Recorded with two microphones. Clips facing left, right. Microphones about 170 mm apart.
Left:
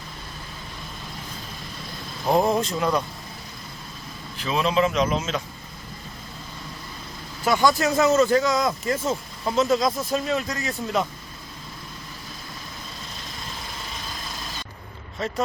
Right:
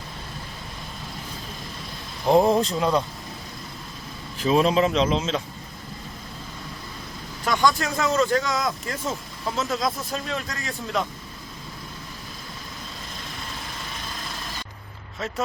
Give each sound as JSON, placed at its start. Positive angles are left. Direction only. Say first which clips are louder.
{"t": 2.2, "sound": "speech", "louder": "right 3 dB", "side_deg": 0}
{"t": 2.7, "sound": "speech", "louder": "right 1 dB", "side_deg": -20}
{"t": 4.4, "sound": "a man's voice", "louder": "right 3 dB", "side_deg": -40}
{"t": 7.4, "sound": "speech", "louder": "left 2 dB", "side_deg": 10}
{"t": 15.2, "sound": "speech", "louder": "left 3 dB", "side_deg": 0}